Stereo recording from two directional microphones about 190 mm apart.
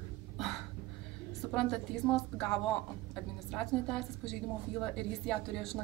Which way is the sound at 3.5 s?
5° left (ahead or behind).